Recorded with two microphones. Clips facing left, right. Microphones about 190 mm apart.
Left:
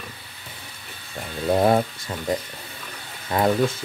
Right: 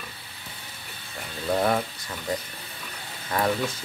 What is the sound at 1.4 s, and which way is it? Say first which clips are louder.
Speech: left 5 dB; 30° left (ahead or behind).